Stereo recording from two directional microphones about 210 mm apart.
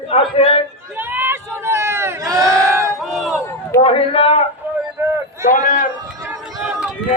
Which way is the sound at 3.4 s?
15° left (ahead or behind).